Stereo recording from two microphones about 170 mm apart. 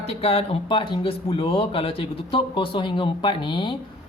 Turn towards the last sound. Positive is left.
turn(degrees=30)  # may be behind; listen again after turning